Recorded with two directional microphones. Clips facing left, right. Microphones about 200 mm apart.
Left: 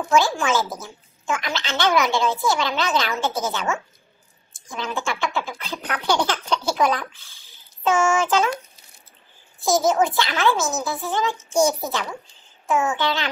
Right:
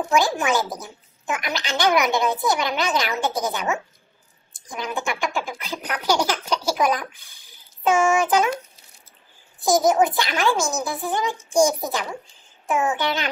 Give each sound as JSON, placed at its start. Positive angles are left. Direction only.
{"t": 0.0, "sound": "speech", "side_deg": -20}
{"t": 9.6, "sound": "speech", "side_deg": -15}